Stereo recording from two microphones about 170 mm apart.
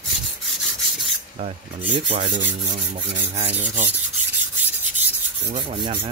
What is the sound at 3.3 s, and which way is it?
Rub, 30° right (ahead or behind).